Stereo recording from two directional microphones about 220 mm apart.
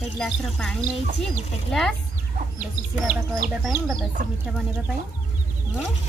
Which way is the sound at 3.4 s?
Centre (ahead or behind).